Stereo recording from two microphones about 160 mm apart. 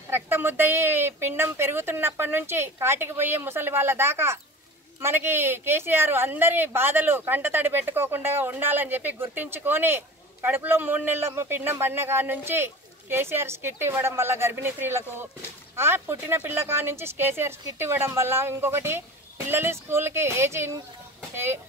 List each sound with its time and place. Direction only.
0.1 s speech: 15° right (ahead or behind)